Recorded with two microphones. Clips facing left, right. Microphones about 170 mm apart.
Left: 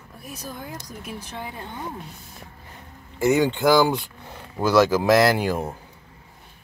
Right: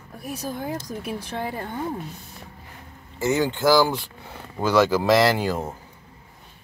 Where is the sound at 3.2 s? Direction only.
15° left (ahead or behind).